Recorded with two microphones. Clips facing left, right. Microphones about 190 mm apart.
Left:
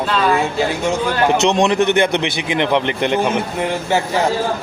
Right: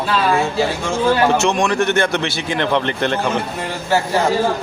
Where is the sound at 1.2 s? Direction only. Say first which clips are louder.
Left 2 dB; 20° left (ahead or behind).